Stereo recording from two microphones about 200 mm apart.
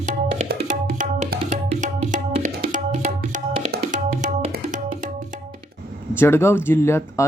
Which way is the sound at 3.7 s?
40° right (ahead or behind).